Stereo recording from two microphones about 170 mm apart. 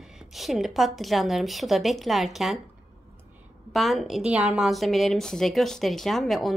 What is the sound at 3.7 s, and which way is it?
A woman's voice, centre (ahead or behind).